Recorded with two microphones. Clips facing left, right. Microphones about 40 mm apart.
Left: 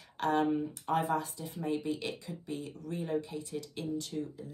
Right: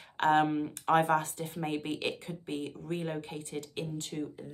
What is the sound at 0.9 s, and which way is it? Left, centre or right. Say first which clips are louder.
Speech: right 5 dB; right.